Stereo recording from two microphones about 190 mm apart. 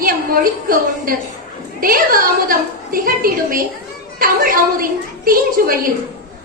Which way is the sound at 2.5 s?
50° right (ahead or behind).